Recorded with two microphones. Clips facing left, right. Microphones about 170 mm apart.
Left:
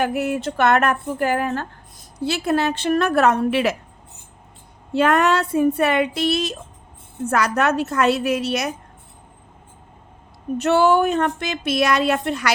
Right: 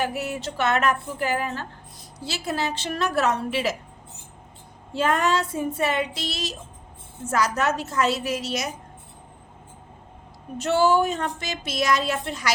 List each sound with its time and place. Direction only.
0.0 s speech: 55° left (ahead or behind)
4.9 s speech: 65° left (ahead or behind)
10.6 s speech: 60° left (ahead or behind)